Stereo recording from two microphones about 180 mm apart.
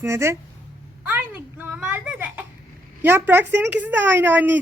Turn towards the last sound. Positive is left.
turn(degrees=-10)  # may be behind; listen again after turning